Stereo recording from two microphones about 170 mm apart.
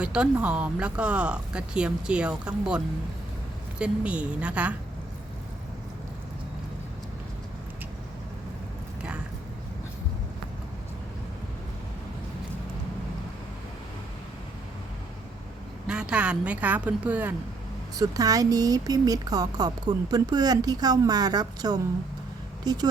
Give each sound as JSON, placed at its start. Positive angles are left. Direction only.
{"t": 0.0, "sound": "speech", "side_deg": -5}
{"t": 15.9, "sound": "speech", "side_deg": -5}
{"t": 17.9, "sound": "speech", "side_deg": -20}